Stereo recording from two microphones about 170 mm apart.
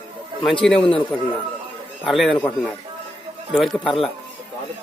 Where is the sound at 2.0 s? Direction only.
Centre (ahead or behind).